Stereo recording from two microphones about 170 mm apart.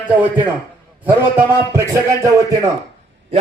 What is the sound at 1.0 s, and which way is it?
A man's voice, 15° right (ahead or behind).